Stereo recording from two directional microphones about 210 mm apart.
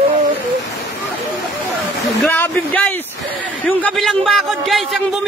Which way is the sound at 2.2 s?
10° left (ahead or behind).